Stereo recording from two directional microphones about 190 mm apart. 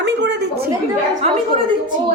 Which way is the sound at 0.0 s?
65° right (ahead or behind).